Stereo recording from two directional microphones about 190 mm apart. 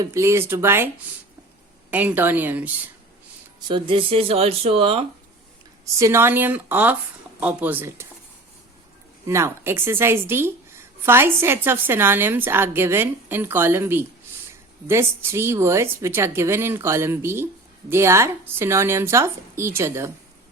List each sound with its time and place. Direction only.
0.0 s a woman's voice: 15° right (ahead or behind)
1.9 s a woman's voice: 10° right (ahead or behind)
3.7 s speech: 25° right (ahead or behind)
5.8 s a woman's voice: 15° right (ahead or behind)
9.2 s a woman's voice: 15° right (ahead or behind)